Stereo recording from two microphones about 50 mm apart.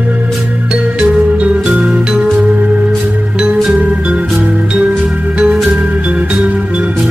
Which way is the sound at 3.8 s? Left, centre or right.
Right.